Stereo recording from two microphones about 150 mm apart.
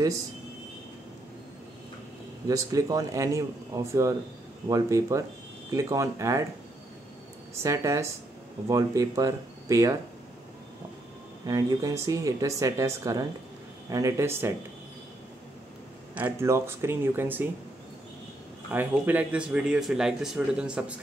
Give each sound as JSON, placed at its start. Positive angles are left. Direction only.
{"t": 2.4, "sound": "speech", "side_deg": -25}
{"t": 7.6, "sound": "speech", "side_deg": -20}
{"t": 11.4, "sound": "speech", "side_deg": -25}
{"t": 16.2, "sound": "speech", "side_deg": -15}
{"t": 18.7, "sound": "speech", "side_deg": -10}